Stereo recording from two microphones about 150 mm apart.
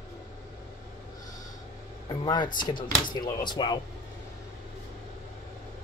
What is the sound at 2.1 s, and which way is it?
Speech, 30° left (ahead or behind).